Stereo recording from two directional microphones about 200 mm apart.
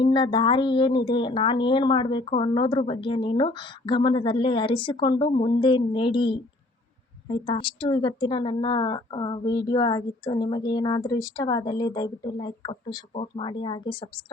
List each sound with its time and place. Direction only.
0.0 s speech: 25° left (ahead or behind)